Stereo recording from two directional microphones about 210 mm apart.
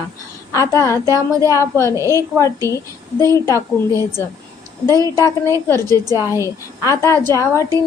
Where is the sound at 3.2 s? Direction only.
15° left (ahead or behind).